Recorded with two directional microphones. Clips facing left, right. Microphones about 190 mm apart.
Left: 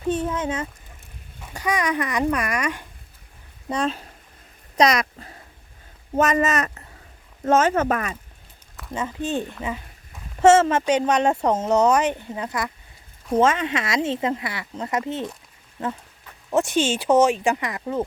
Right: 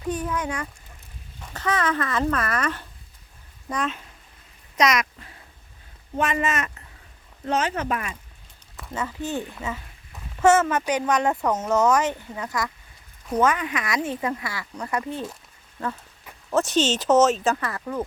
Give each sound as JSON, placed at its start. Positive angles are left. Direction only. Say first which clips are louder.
{"t": 0.1, "sound": "speech", "louder": "left 3 dB", "side_deg": 25}
{"t": 1.4, "sound": "speech", "louder": "left 1 dB", "side_deg": 10}
{"t": 3.7, "sound": "speech", "louder": "left 4 dB", "side_deg": 30}
{"t": 8.9, "sound": "speech", "louder": "left 3 dB", "side_deg": 20}